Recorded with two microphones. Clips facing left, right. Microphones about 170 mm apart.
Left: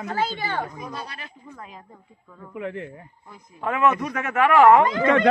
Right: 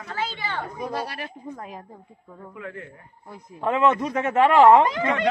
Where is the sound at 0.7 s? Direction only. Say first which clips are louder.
Right 5 dB; 65° right (ahead or behind).